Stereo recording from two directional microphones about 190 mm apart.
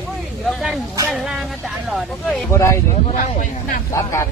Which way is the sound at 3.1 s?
45° left (ahead or behind).